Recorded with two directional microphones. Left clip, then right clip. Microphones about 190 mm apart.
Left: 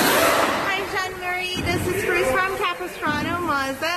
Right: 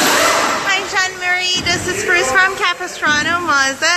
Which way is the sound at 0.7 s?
5° right (ahead or behind).